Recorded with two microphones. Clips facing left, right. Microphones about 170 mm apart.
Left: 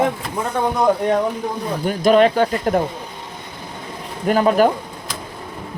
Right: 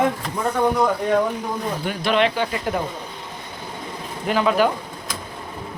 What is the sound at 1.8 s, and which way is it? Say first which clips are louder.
Speech: left 7 dB; 40° left (ahead or behind).